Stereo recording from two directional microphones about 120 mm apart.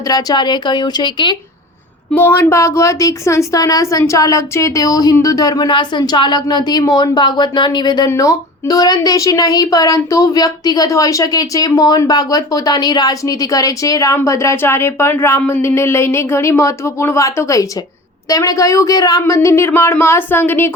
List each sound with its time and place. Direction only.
0.1 s speech: 30° left (ahead or behind)
2.1 s speech: 20° left (ahead or behind)